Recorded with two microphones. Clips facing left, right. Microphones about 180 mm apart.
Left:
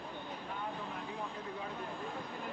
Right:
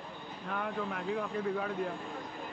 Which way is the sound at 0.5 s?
75° right (ahead or behind).